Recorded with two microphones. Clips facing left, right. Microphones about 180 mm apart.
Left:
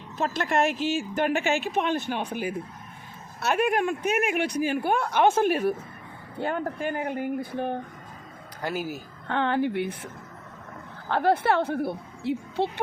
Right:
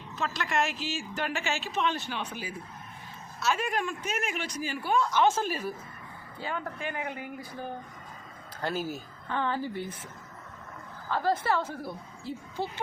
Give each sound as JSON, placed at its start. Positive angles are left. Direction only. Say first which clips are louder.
{"t": 0.2, "sound": "speech", "louder": "left 6 dB", "side_deg": 50}
{"t": 6.4, "sound": "speech", "louder": "left 7 dB", "side_deg": 50}
{"t": 7.5, "sound": "a woman's voice", "louder": "left 9 dB", "side_deg": 65}
{"t": 8.6, "sound": "speech", "louder": "left 2 dB", "side_deg": 10}
{"t": 9.2, "sound": "a woman's voice", "louder": "left 6 dB", "side_deg": 65}
{"t": 11.1, "sound": "speech", "louder": "left 5 dB", "side_deg": 65}